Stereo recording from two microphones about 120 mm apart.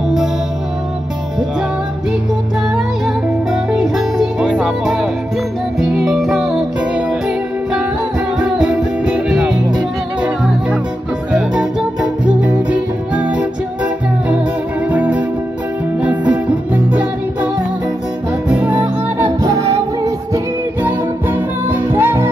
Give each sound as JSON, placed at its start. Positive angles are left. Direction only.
{"t": 3.7, "sound": "music", "side_deg": -5}
{"t": 12.3, "sound": "music", "side_deg": -10}
{"t": 18.5, "sound": "music", "side_deg": -10}
{"t": 19.2, "sound": "music", "side_deg": -30}
{"t": 20.8, "sound": "music", "side_deg": -15}